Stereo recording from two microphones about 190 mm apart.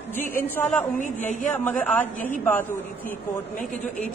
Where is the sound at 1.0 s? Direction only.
40° left (ahead or behind).